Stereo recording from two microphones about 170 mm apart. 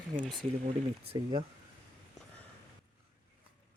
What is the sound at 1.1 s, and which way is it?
Speech, 25° right (ahead or behind).